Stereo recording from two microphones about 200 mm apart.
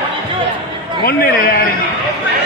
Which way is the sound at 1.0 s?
50° left (ahead or behind).